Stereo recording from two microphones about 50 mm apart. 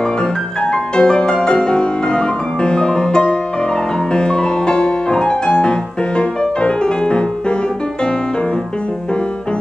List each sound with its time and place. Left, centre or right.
0.0 s music: centre